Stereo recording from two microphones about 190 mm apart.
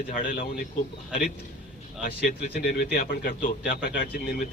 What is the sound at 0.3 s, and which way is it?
Speech, 50° left (ahead or behind).